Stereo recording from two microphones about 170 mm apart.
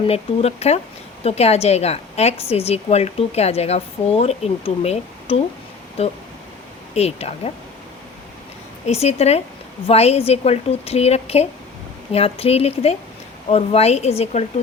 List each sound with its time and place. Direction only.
0.1 s a woman's voice: 40° left (ahead or behind)
6.9 s a woman's voice: 35° left (ahead or behind)
8.9 s a woman's voice: 40° left (ahead or behind)